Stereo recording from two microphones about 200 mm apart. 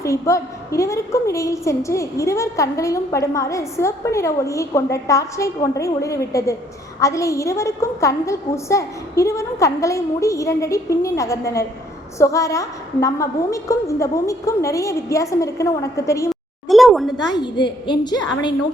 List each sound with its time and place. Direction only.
0.0 s a woman's voice: 15° left (ahead or behind)
16.3 s a sound: centre (ahead or behind)
17.3 s a woman's voice: 25° left (ahead or behind)